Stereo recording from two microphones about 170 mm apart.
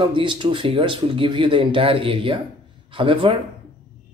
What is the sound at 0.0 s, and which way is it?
Speech, 30° right (ahead or behind).